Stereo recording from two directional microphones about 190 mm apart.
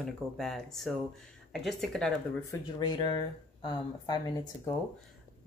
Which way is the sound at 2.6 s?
20° left (ahead or behind).